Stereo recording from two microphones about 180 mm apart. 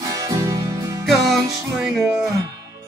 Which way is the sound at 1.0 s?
Centre (ahead or behind).